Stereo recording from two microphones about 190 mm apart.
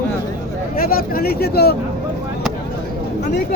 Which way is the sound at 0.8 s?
50° left (ahead or behind).